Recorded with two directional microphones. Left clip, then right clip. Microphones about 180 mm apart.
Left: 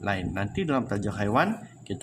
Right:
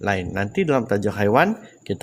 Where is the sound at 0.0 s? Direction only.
45° right (ahead or behind).